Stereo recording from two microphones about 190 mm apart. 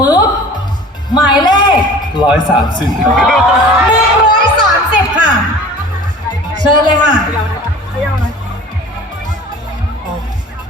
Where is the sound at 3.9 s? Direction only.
25° left (ahead or behind).